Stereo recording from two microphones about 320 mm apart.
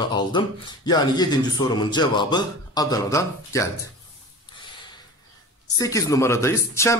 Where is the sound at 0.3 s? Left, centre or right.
Centre.